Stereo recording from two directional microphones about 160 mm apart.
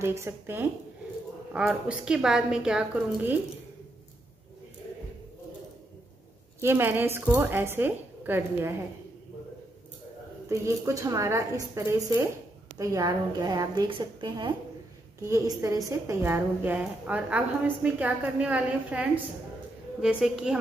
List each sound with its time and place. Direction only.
0.0 s a woman's voice: 15° right (ahead or behind)
6.6 s a woman's voice: 15° right (ahead or behind)
10.5 s a woman's voice: 20° right (ahead or behind); by 20.5 s 5° right (ahead or behind)